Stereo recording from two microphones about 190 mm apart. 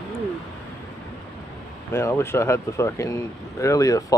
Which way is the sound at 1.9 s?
15° left (ahead or behind).